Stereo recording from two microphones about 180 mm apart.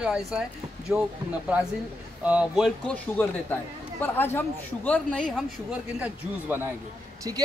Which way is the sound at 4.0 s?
10° left (ahead or behind).